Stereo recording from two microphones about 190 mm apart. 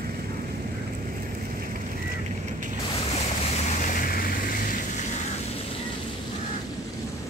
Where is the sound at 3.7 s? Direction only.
45° left (ahead or behind).